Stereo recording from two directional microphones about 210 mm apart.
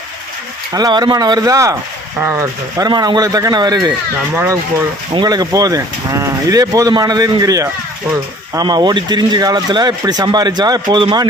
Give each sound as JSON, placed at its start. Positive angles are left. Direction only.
{"t": 0.7, "sound": "speech", "side_deg": -20}
{"t": 5.1, "sound": "speech", "side_deg": -20}